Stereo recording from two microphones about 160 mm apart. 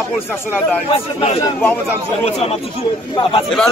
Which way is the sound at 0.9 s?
40° left (ahead or behind).